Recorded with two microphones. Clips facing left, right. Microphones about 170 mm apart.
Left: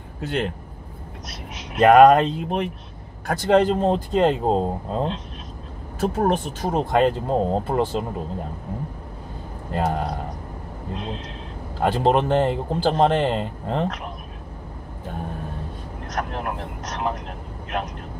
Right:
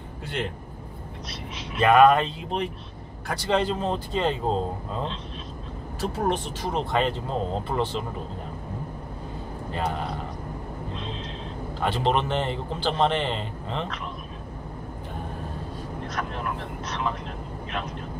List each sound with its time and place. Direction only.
0.2 s speech: 50° left (ahead or behind)
1.8 s a man's voice: 45° left (ahead or behind)
9.8 s a man's voice: 45° left (ahead or behind)
11.8 s a man's voice: 45° left (ahead or behind)
16.1 s a man's voice: 50° left (ahead or behind)